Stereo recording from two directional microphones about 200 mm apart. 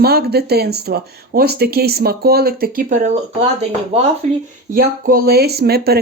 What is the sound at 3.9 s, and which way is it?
Speech, 30° right (ahead or behind).